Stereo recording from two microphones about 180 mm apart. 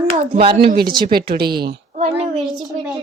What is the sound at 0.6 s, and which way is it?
Speech, 60° right (ahead or behind).